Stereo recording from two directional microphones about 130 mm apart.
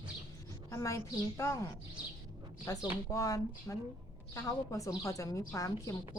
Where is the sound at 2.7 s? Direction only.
25° left (ahead or behind).